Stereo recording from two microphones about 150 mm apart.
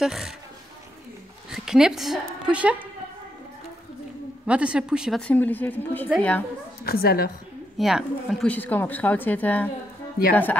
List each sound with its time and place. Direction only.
0.0 s a woman's voice: centre (ahead or behind)
1.5 s a woman's voice: 5° right (ahead or behind)
4.5 s a woman's voice: 10° right (ahead or behind)
5.2 s speech: 10° left (ahead or behind)
6.8 s a woman's voice: 90° left
7.7 s a woman's voice: centre (ahead or behind)
8.5 s speech: 10° left (ahead or behind)